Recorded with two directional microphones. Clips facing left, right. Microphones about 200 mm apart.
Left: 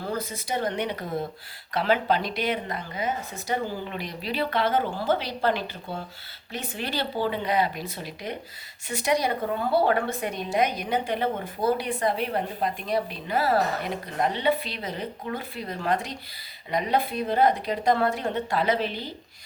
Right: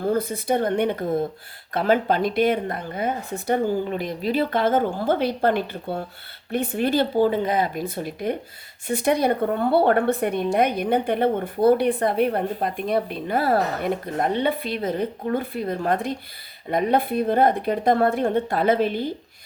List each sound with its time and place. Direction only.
0.0 s speech: 55° right (ahead or behind)
3.8 s a woman's voice: 50° right (ahead or behind)